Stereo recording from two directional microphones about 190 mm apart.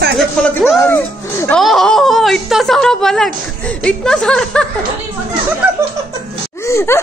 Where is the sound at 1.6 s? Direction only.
Centre (ahead or behind).